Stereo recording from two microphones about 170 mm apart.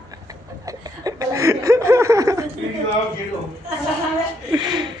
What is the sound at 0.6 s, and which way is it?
Chuckle, 20° right (ahead or behind).